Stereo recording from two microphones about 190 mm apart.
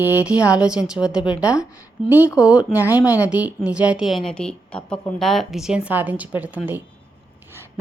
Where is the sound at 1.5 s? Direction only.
15° left (ahead or behind).